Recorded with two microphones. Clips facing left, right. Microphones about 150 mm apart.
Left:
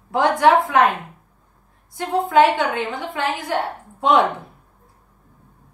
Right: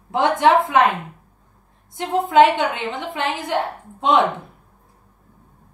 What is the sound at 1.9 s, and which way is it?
A woman's voice, 20° right (ahead or behind).